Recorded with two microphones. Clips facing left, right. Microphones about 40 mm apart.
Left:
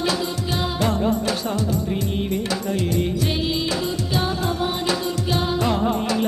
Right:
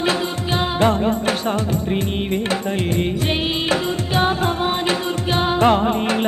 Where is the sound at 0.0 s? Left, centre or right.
Right.